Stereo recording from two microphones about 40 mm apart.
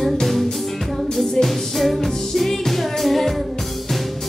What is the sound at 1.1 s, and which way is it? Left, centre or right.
Music, centre.